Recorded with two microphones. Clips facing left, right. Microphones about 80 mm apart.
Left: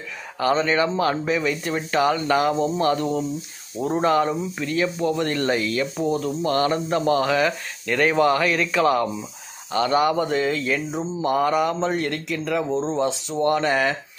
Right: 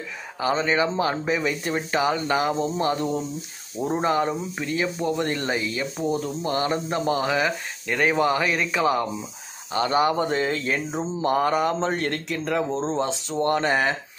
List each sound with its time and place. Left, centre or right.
0.4 s speech: centre